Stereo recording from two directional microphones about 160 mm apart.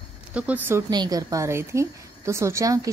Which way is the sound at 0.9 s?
25° right (ahead or behind).